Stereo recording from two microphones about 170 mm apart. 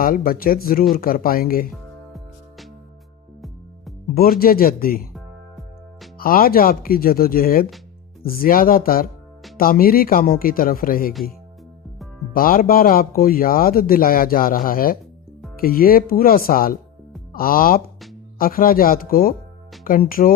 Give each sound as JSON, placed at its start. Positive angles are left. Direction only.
{"t": 0.0, "sound": "speech", "side_deg": 60}
{"t": 4.1, "sound": "speech", "side_deg": 60}
{"t": 6.1, "sound": "speech", "side_deg": 60}
{"t": 12.3, "sound": "speech", "side_deg": 55}